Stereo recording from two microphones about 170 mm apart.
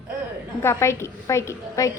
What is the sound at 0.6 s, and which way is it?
A woman's voice, 15° left (ahead or behind).